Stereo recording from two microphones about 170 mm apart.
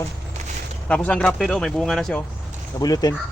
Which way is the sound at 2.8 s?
25° left (ahead or behind).